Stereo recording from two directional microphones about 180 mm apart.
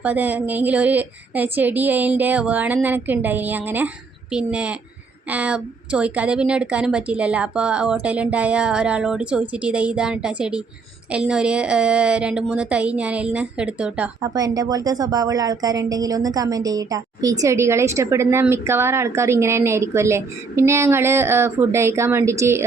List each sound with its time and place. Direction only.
0.0 s a woman's voice: 10° right (ahead or behind)
14.2 s speech: 20° right (ahead or behind)